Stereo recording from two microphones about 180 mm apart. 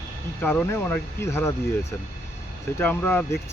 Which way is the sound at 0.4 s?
10° left (ahead or behind).